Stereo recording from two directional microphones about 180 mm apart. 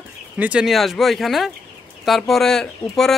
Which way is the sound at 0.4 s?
5° right (ahead or behind).